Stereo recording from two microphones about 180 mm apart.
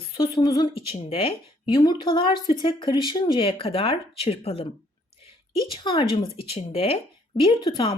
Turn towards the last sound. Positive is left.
turn(degrees=30)  # may be behind; listen again after turning